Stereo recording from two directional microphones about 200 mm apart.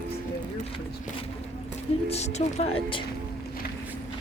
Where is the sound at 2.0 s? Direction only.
30° left (ahead or behind).